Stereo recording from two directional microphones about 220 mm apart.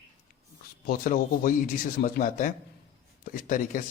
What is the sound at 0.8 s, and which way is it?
Speech, 40° left (ahead or behind).